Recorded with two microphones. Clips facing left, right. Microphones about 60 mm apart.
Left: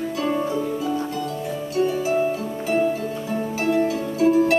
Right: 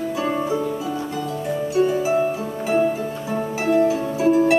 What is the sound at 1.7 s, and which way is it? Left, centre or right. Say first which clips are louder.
Harp: right 2 dB; centre.